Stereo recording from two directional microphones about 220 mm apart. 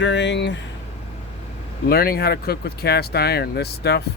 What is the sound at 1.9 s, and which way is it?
Speech, 45° left (ahead or behind).